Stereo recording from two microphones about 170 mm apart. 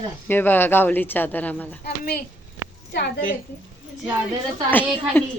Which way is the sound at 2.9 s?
90° left.